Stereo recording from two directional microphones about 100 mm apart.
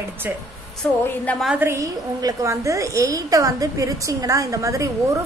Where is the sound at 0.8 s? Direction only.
10° left (ahead or behind).